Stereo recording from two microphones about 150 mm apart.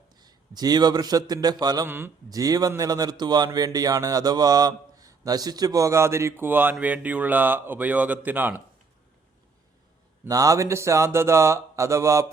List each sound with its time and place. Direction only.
0.2 s a man's voice: 25° right (ahead or behind)
1.9 s speech: 15° right (ahead or behind)
10.2 s speech: 20° right (ahead or behind)